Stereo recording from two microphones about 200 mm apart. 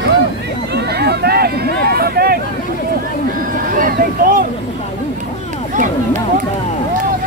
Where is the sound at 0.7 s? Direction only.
55° right (ahead or behind).